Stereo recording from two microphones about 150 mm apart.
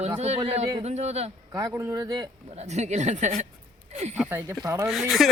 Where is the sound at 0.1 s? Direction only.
45° right (ahead or behind).